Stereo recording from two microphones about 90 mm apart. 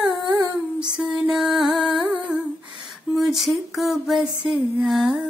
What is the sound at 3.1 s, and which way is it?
Speech, centre (ahead or behind).